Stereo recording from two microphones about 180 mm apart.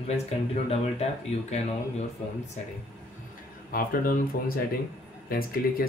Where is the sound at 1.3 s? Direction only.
35° left (ahead or behind).